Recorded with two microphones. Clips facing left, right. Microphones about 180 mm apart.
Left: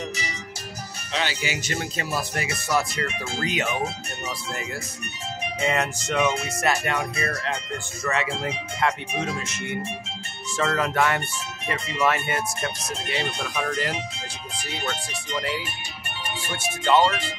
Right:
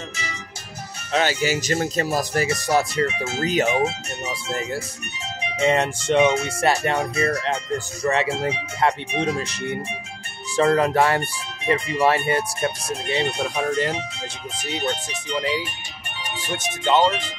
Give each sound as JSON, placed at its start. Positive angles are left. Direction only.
{"t": 1.1, "sound": "speech", "side_deg": -45}
{"t": 5.6, "sound": "speech", "side_deg": -30}
{"t": 16.4, "sound": "speech", "side_deg": -20}